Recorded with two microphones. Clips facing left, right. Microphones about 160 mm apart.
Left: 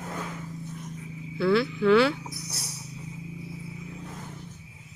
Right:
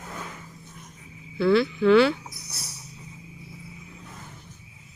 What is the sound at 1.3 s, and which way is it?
Speech, 5° left (ahead or behind).